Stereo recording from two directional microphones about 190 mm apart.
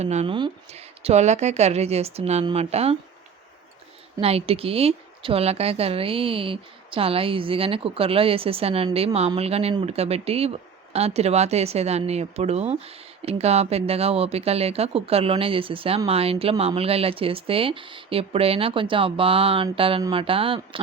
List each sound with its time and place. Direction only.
0.0 s speech: 35° right (ahead or behind)
4.2 s a woman's voice: 30° right (ahead or behind)